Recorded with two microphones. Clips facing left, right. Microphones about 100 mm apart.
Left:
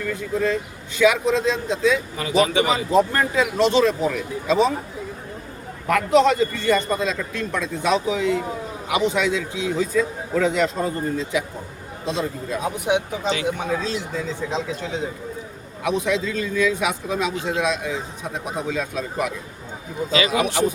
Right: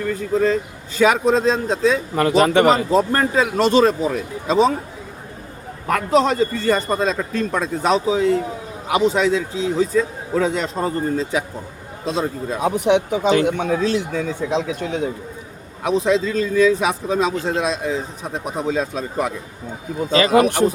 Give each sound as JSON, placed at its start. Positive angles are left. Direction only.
{"t": 0.9, "sound": "a man's voice", "side_deg": -40}
{"t": 2.1, "sound": "speech", "side_deg": -55}
{"t": 5.9, "sound": "a man's voice", "side_deg": -35}
{"t": 12.9, "sound": "speech", "side_deg": -60}
{"t": 15.8, "sound": "a man's voice", "side_deg": -35}
{"t": 20.1, "sound": "speech", "side_deg": -45}